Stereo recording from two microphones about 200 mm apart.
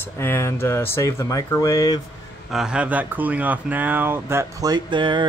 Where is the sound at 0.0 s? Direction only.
10° left (ahead or behind).